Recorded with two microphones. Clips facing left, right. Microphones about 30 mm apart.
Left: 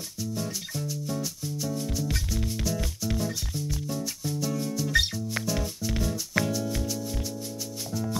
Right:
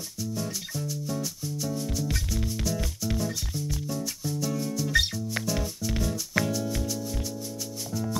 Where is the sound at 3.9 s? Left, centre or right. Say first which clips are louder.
Even; left.